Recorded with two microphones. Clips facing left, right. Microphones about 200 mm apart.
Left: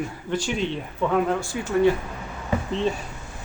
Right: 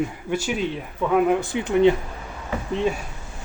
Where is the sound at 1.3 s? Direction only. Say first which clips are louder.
Right 3 dB; 20° right (ahead or behind).